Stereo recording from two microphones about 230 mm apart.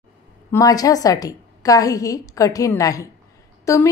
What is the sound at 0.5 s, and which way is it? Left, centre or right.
A woman's voice, centre.